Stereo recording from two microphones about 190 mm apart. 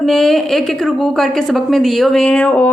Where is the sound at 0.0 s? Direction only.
Centre (ahead or behind).